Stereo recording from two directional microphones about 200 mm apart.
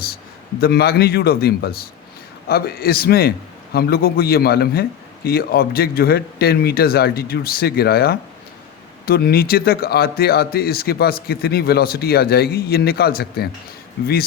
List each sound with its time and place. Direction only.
0.6 s a man's voice: 50° left (ahead or behind)